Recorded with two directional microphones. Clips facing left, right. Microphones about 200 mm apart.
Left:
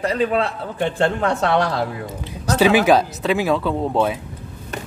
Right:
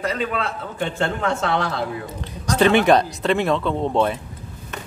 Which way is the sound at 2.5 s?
5° left (ahead or behind).